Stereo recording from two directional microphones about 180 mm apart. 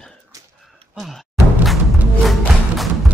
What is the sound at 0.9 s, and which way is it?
Music, centre (ahead or behind).